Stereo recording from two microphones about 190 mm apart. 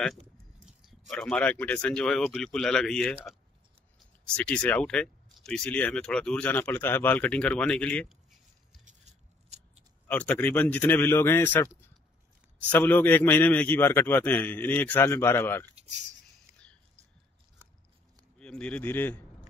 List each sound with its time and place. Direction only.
0.7 s speech: centre (ahead or behind)
4.4 s speech: 5° left (ahead or behind)
8.8 s scissors: 35° right (ahead or behind)
10.0 s a man's voice: 5° left (ahead or behind)
12.7 s a man's voice: 10° left (ahead or behind)
18.4 s a man's voice: 5° left (ahead or behind)